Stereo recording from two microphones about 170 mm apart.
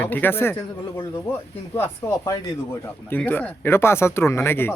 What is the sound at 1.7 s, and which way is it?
Speech, 15° left (ahead or behind).